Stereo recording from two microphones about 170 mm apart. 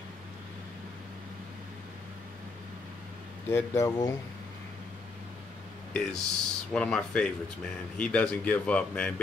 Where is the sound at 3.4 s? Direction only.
15° left (ahead or behind).